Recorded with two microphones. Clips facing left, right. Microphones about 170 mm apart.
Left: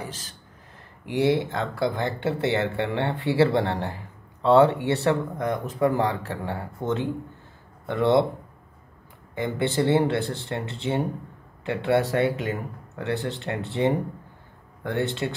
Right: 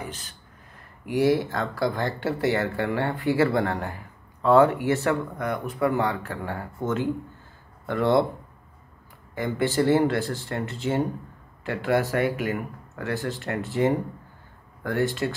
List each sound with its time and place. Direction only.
1.0 s speech: 25° left (ahead or behind)
9.3 s speech: 20° left (ahead or behind)